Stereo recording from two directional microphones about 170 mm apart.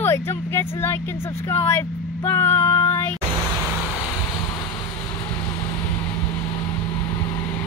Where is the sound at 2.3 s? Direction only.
15° left (ahead or behind).